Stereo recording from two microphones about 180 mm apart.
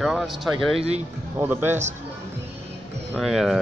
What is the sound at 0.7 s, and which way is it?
Speech, 35° right (ahead or behind).